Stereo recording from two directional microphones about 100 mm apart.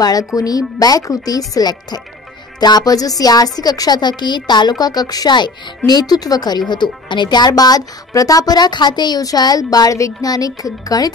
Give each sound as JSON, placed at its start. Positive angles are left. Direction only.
{"t": 0.0, "sound": "speech", "side_deg": 35}